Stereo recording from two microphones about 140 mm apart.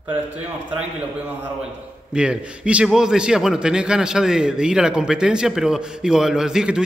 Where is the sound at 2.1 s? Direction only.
5° right (ahead or behind).